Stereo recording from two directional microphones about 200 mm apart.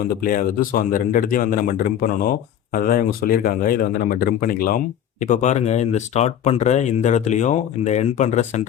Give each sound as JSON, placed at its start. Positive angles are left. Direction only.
{"t": 0.2, "sound": "speech", "side_deg": 45}